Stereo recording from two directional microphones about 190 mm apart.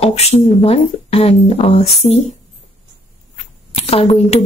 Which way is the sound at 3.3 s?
30° left (ahead or behind).